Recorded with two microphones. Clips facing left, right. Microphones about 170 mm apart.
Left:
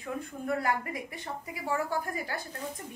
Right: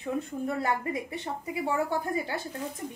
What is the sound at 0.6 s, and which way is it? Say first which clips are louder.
A woman's voice: right 2 dB; 25° right (ahead or behind).